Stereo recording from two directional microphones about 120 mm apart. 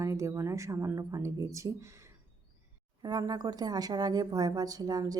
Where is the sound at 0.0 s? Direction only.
25° right (ahead or behind).